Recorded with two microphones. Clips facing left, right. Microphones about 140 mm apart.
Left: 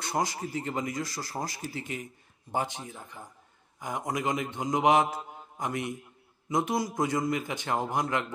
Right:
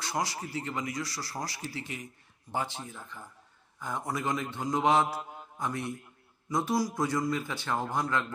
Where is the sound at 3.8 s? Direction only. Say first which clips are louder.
Left 2 dB; 15° left (ahead or behind).